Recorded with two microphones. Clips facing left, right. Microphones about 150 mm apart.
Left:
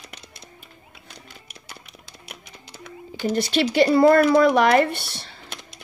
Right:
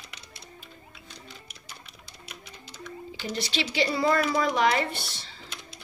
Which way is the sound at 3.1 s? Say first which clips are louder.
Left 10 dB; 55° left (ahead or behind).